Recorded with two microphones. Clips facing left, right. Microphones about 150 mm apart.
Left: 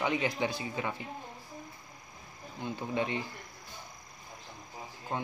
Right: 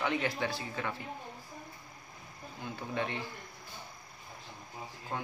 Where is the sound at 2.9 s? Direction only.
15° left (ahead or behind).